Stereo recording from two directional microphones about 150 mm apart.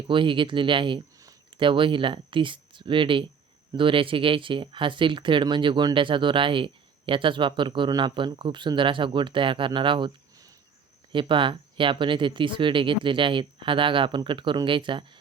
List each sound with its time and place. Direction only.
0.1 s speech: 35° right (ahead or behind)